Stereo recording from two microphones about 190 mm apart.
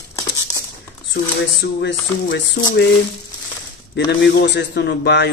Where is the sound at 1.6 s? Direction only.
70° left (ahead or behind).